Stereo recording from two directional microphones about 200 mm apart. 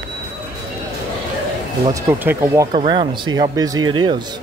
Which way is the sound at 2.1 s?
10° right (ahead or behind).